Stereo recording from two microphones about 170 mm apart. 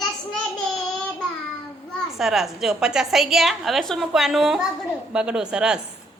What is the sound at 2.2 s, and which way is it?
A woman's voice, centre (ahead or behind).